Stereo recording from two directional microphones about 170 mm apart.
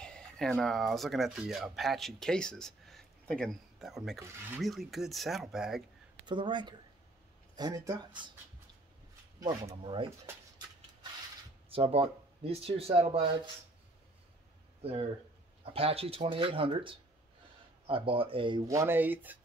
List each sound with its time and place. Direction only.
0.0 s speech: 5° left (ahead or behind)
6.2 s speech: 25° right (ahead or behind)
9.4 s speech: 25° right (ahead or behind)
11.7 s speech: 35° right (ahead or behind)
14.8 s speech: 35° right (ahead or behind)
18.7 s speech: 15° right (ahead or behind)